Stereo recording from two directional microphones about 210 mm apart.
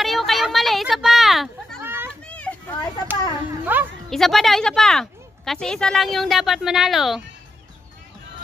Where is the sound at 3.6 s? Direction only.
10° right (ahead or behind).